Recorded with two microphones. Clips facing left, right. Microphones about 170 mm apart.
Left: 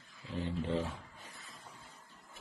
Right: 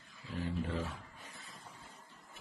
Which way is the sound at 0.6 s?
25° left (ahead or behind).